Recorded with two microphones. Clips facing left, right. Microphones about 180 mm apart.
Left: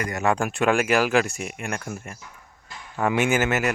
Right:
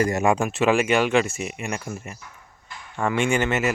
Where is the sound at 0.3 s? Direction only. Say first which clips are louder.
Left 2 dB; 5° right (ahead or behind).